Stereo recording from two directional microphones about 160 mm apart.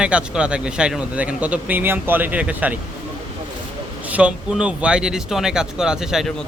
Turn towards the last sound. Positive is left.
turn(degrees=-5)  # may be behind; listen again after turning